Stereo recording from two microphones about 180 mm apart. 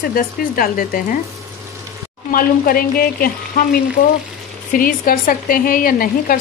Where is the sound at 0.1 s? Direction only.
50° left (ahead or behind).